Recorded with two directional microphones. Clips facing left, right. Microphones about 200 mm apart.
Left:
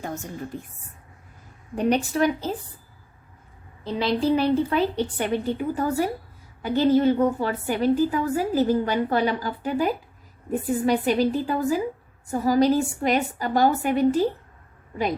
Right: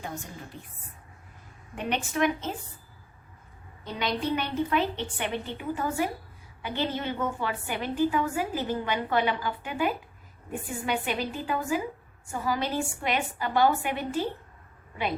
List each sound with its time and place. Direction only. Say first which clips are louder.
0.0 s a woman's voice: left 6 dB; 45° left (ahead or behind)
1.7 s a woman's voice: left 8 dB; 35° left (ahead or behind)
3.8 s a woman's voice: left 7 dB; 30° left (ahead or behind)